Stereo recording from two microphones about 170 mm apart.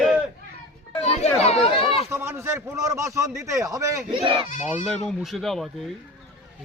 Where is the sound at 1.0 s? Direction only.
40° left (ahead or behind).